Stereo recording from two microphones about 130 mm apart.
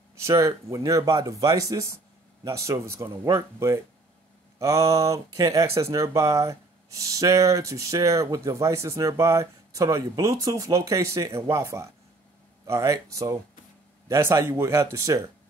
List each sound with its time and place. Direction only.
0.3 s speech: 25° right (ahead or behind)